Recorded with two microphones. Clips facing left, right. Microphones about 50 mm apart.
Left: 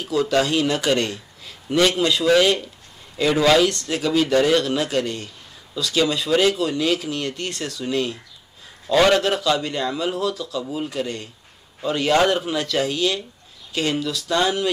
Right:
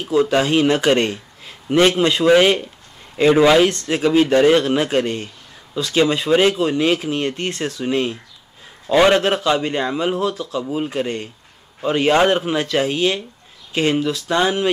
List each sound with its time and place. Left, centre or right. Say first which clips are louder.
0.0 s a man's voice: right 3 dB; right